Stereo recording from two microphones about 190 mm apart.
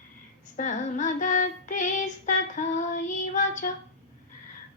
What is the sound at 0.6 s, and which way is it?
Female singing, 40° left (ahead or behind).